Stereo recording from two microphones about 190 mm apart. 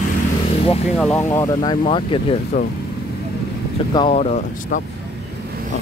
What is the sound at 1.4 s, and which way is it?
Speech, 20° left (ahead or behind).